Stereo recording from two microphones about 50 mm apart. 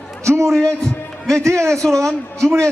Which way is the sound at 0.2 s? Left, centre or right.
Right.